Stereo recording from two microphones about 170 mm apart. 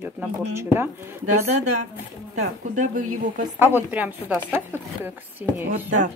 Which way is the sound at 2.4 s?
50° right (ahead or behind).